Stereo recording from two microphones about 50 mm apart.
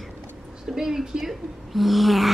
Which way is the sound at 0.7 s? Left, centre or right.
Centre.